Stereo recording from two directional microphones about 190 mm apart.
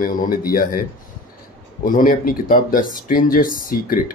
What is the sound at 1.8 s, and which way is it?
Speech, 45° left (ahead or behind).